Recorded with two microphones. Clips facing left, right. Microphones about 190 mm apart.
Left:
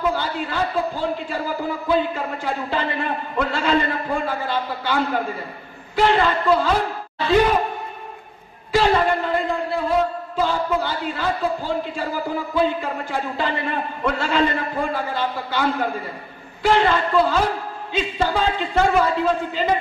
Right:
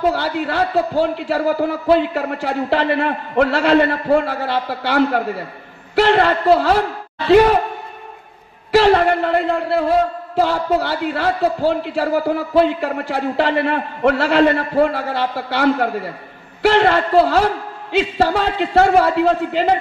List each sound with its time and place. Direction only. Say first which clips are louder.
0.1 s a man's voice: right 5 dB; 70° right (ahead or behind)
8.7 s a man's voice: right 5 dB; 70° right (ahead or behind)